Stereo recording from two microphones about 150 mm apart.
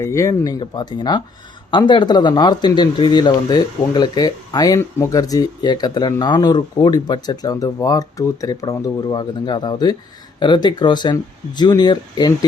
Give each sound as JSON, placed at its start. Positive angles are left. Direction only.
{"t": 0.0, "sound": "speech", "side_deg": 20}